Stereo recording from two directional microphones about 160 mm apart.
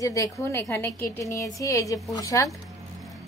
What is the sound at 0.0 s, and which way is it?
A woman's voice, 20° left (ahead or behind).